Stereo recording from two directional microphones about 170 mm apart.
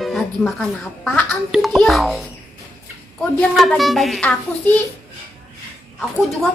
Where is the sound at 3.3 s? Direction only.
Centre (ahead or behind).